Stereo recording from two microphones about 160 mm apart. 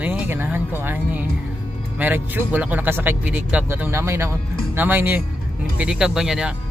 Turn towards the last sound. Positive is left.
turn(degrees=-5)  # may be behind; listen again after turning